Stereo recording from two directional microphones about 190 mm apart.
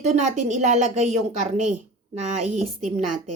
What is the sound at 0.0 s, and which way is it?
Speech, 40° right (ahead or behind).